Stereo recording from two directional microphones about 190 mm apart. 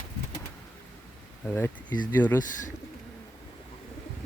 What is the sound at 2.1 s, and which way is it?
Speech, 10° left (ahead or behind).